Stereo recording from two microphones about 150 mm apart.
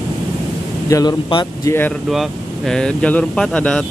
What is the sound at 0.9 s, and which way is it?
Speech, 25° left (ahead or behind).